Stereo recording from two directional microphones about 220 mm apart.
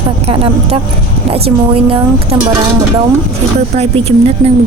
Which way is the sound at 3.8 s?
25° right (ahead or behind).